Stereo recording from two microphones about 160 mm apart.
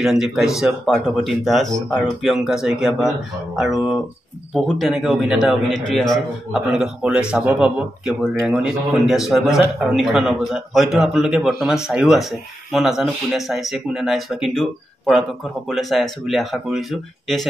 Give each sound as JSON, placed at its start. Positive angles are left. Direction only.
{"t": 0.0, "sound": "a man's voice", "side_deg": 0}